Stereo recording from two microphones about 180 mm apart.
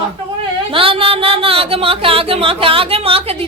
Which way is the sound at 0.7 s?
30° right (ahead or behind).